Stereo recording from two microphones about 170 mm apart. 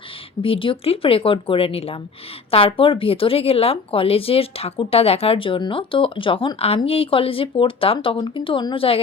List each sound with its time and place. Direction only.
0.4 s speech: 30° left (ahead or behind)